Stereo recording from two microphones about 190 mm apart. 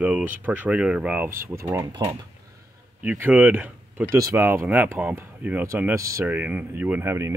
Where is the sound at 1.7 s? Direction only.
20° right (ahead or behind).